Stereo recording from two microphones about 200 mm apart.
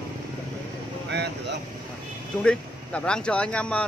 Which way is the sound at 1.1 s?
60° right (ahead or behind).